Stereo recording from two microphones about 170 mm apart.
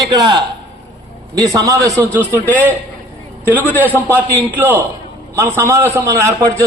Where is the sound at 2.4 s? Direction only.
10° left (ahead or behind).